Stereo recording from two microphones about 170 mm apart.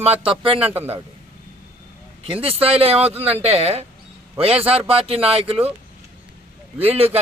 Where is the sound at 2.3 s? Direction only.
35° right (ahead or behind).